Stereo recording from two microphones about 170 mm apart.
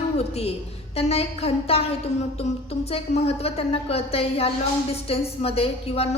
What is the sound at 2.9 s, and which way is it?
A woman's voice, 35° left (ahead or behind).